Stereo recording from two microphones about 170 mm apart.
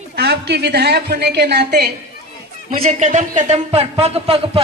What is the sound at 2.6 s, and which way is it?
Speech, 45° right (ahead or behind).